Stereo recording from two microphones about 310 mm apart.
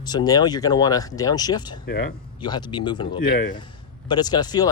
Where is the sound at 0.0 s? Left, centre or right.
Centre.